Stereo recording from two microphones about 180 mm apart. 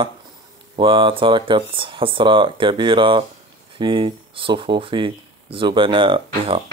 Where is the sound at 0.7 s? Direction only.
30° right (ahead or behind).